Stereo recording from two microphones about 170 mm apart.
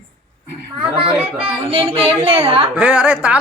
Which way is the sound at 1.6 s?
35° right (ahead or behind).